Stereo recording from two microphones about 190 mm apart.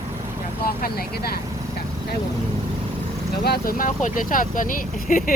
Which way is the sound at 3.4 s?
55° left (ahead or behind).